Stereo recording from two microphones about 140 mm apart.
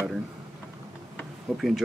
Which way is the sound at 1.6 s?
Centre (ahead or behind).